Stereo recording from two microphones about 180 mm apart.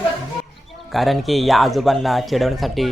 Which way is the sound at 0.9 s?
Centre (ahead or behind).